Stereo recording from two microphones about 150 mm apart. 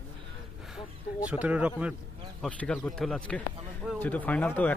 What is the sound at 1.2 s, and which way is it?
Speech, 10° right (ahead or behind).